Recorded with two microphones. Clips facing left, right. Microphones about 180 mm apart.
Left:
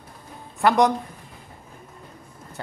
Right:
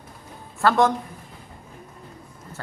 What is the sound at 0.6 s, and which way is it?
Speech, 15° left (ahead or behind).